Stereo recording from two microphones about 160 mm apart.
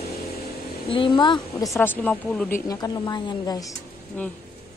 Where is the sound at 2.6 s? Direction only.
20° left (ahead or behind).